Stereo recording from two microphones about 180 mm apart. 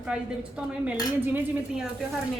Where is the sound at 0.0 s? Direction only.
5° right (ahead or behind).